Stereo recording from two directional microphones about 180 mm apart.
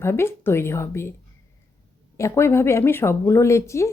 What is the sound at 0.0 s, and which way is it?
Speech, 15° left (ahead or behind).